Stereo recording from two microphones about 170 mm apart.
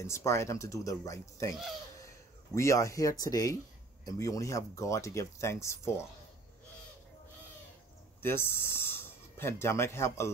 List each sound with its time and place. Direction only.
0.0 s speech: 15° left (ahead or behind)
2.5 s speech: 15° left (ahead or behind)
8.2 s speech: 15° left (ahead or behind)